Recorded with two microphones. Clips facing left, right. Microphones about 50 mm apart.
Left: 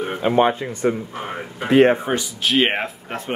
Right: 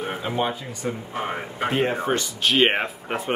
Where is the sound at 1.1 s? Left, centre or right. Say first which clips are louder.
Right 1 dB; centre.